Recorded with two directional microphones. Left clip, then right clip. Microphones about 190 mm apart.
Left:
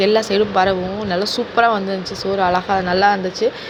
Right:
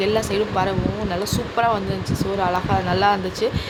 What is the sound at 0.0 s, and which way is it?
Speech, 15° left (ahead or behind).